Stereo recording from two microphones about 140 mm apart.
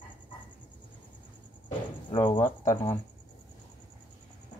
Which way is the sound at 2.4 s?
20° left (ahead or behind).